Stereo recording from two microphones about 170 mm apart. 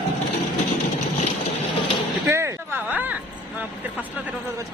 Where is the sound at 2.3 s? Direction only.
15° right (ahead or behind).